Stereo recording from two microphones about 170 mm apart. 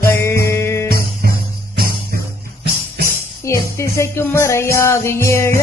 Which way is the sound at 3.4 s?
15° left (ahead or behind).